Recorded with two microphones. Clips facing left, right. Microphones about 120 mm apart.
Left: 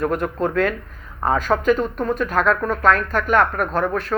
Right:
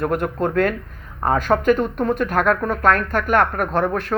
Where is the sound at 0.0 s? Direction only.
50° right (ahead or behind).